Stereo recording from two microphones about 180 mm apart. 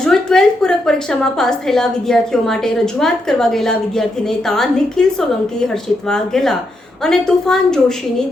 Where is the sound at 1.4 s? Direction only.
5° left (ahead or behind).